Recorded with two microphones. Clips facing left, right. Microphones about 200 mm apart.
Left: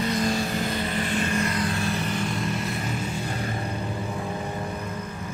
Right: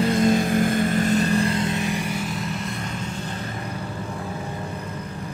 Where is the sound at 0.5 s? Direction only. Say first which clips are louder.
Right 7 dB; 50° right (ahead or behind); by 2.7 s centre (ahead or behind).